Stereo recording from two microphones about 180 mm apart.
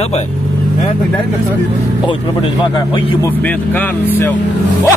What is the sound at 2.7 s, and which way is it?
Speech, 25° left (ahead or behind).